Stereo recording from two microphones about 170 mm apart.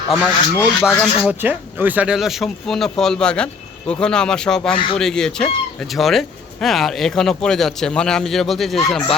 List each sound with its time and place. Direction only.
0.5 s speech: 15° left (ahead or behind)
1.3 s speech: 10° right (ahead or behind); by 4.7 s 5° left (ahead or behind)
4.7 s speech: 30° left (ahead or behind)
4.9 s speech: 5° left (ahead or behind)